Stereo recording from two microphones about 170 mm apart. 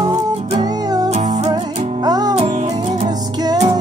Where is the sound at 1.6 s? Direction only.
40° right (ahead or behind).